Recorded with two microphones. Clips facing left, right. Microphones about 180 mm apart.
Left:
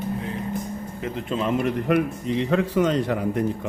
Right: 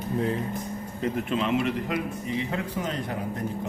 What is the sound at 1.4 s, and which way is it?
A man's voice, 50° left (ahead or behind).